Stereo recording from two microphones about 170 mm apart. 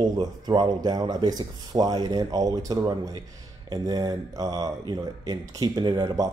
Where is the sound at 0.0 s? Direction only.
25° right (ahead or behind).